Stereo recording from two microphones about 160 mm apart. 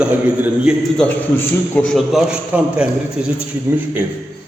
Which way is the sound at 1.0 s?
10° left (ahead or behind).